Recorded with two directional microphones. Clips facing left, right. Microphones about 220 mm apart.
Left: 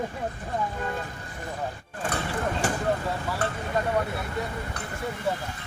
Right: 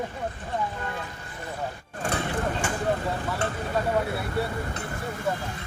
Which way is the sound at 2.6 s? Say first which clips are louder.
Left 2 dB; 40° left (ahead or behind).